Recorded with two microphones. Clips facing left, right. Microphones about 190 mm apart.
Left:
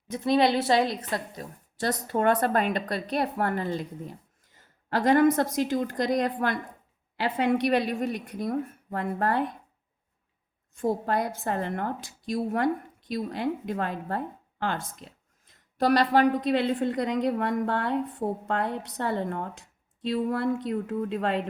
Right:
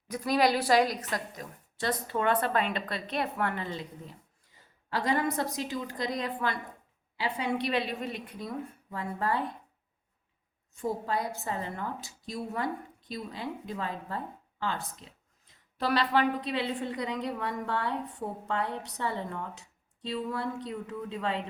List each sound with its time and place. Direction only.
0.1 s a woman's voice: 25° left (ahead or behind); by 9.4 s 60° left (ahead or behind)
10.8 s speech: 70° left (ahead or behind)
13.1 s a woman's voice: 70° left (ahead or behind)
14.6 s speech: 75° left (ahead or behind)
15.8 s a woman's voice: 45° left (ahead or behind)